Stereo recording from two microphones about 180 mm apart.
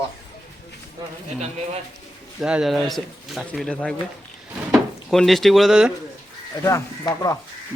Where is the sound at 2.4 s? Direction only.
5° right (ahead or behind).